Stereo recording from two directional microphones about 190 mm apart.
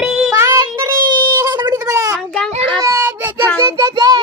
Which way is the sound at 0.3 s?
15° right (ahead or behind).